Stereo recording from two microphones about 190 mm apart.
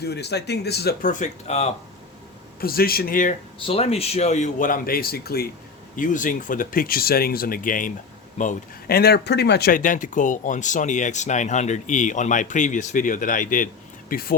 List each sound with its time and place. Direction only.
0.0 s speech: 60° left (ahead or behind)
1.2 s speech: 35° left (ahead or behind)
2.6 s speech: 50° left (ahead or behind)
3.7 s speech: 30° left (ahead or behind); by 5.5 s 55° left (ahead or behind)
6.0 s speech: 45° left (ahead or behind)